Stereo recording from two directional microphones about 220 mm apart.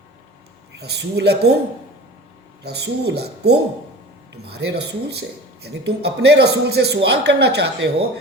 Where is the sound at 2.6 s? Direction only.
50° right (ahead or behind).